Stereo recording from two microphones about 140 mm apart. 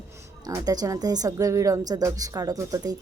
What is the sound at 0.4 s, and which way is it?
A woman's voice, 25° right (ahead or behind).